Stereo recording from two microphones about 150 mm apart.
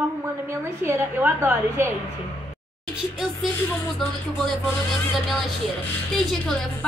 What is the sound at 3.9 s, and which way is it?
Speech, 5° left (ahead or behind).